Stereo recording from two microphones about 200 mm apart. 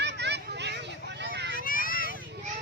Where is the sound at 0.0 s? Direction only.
55° right (ahead or behind).